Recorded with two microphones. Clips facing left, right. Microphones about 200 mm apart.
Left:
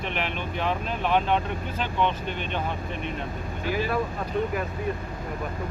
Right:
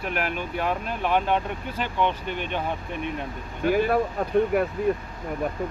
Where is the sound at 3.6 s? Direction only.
55° right (ahead or behind).